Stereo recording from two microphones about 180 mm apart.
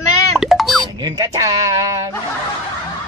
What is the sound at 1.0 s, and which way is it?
Speech, 20° right (ahead or behind).